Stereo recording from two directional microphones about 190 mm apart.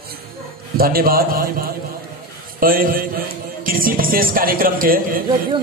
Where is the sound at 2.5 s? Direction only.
50° right (ahead or behind).